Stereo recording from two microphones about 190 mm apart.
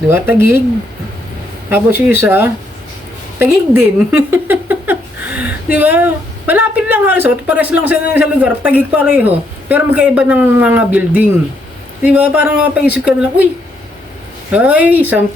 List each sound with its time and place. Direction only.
0.1 s speech: 10° right (ahead or behind)
1.7 s speech: 10° right (ahead or behind)
14.5 s speech: 5° right (ahead or behind)